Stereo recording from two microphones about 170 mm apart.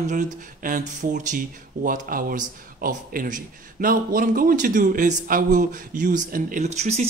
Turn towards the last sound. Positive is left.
turn(degrees=-40)  # may be behind; listen again after turning